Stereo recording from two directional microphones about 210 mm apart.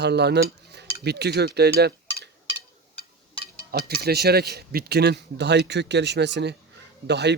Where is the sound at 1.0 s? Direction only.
50° right (ahead or behind).